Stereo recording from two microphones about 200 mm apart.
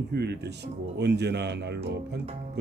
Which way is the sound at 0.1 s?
55° right (ahead or behind).